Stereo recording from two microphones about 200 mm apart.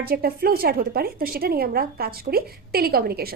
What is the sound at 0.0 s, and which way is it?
A woman's voice, 50° right (ahead or behind).